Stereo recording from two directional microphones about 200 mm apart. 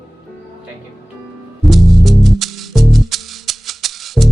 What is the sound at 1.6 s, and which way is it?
Music, centre (ahead or behind).